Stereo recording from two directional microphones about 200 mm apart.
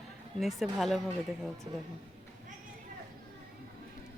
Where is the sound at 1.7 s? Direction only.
25° right (ahead or behind).